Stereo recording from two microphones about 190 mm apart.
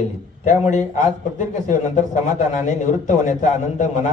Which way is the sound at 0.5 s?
40° left (ahead or behind).